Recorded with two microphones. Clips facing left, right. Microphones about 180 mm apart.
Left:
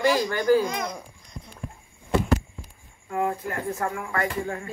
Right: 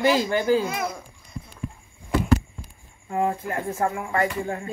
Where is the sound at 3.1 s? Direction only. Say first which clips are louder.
Right 2 dB; 25° right (ahead or behind).